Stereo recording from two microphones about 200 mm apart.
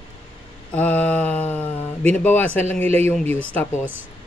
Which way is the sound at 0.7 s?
5° left (ahead or behind).